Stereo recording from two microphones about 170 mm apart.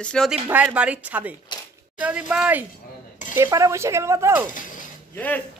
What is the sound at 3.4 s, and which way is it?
Speech, 20° right (ahead or behind).